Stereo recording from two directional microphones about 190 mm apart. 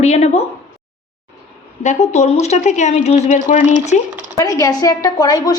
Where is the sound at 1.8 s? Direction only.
40° left (ahead or behind).